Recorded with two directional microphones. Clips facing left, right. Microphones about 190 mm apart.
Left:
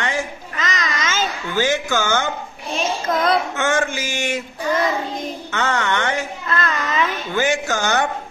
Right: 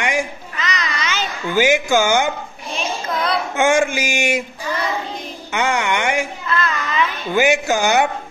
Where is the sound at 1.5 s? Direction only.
10° right (ahead or behind).